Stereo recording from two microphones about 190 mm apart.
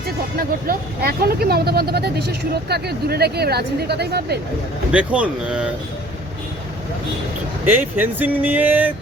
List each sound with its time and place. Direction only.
0.3 s speech: 50° right (ahead or behind)
4.9 s speech: 5° right (ahead or behind)
7.6 s speech: 10° right (ahead or behind)